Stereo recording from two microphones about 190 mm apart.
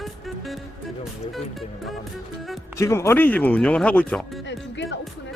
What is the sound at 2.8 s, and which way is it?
Speech, 15° left (ahead or behind).